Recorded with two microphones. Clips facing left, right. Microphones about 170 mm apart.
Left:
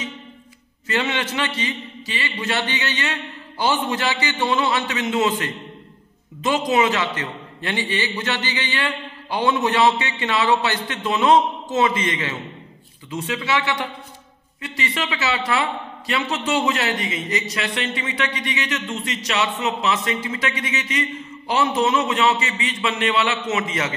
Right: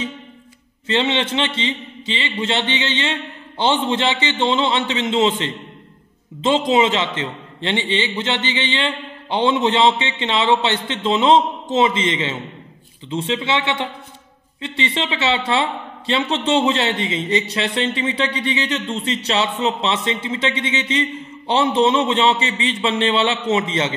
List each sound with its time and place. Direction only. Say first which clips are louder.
0.8 s speech: right 4 dB; 25° right (ahead or behind)